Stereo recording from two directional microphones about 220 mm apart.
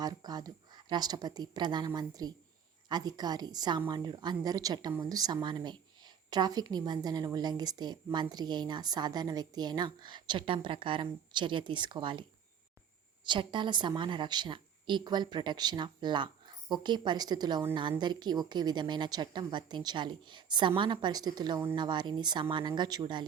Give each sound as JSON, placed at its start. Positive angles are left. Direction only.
{"t": 0.0, "sound": "a woman's voice", "side_deg": -20}
{"t": 13.2, "sound": "a woman's voice", "side_deg": -20}